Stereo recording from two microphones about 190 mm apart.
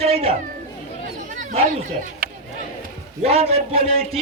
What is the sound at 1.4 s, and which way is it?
Chatter, 40° right (ahead or behind).